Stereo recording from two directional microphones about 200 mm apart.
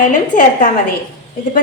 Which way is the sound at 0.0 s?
40° left (ahead or behind).